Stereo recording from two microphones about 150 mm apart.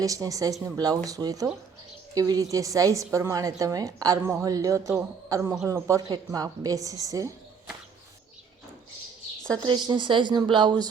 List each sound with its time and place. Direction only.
0.0 s a woman's voice: 20° right (ahead or behind)
9.5 s speech: 30° right (ahead or behind)